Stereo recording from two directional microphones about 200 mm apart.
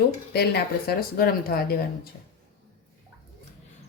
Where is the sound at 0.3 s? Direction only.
50° left (ahead or behind).